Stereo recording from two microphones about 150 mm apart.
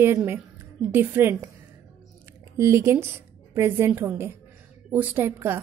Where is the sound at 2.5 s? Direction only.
20° right (ahead or behind).